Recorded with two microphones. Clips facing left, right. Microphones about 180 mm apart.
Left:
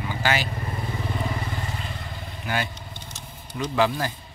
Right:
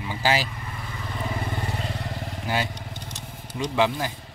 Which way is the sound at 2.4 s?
30° right (ahead or behind).